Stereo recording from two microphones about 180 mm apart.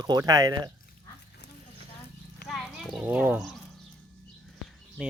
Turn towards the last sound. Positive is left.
turn(degrees=-5)  # may be behind; listen again after turning